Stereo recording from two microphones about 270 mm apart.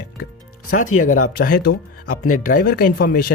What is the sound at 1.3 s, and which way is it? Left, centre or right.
Speech, left.